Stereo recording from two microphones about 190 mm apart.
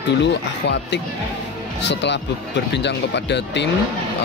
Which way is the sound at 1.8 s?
65° left (ahead or behind).